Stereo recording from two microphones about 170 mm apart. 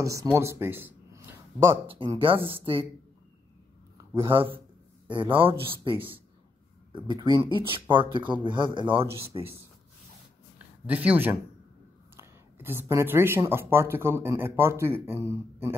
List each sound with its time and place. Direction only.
0.0 s speech: 20° right (ahead or behind)
1.9 s speech: 30° right (ahead or behind)
4.3 s speech: 30° right (ahead or behind)
9.0 s speech: 15° right (ahead or behind)
10.9 s speech: 10° right (ahead or behind)